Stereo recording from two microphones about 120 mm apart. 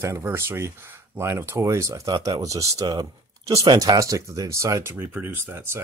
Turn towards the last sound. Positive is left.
turn(degrees=-20)  # may be behind; listen again after turning